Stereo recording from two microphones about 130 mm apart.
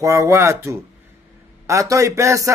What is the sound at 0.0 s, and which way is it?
Speech, 25° right (ahead or behind).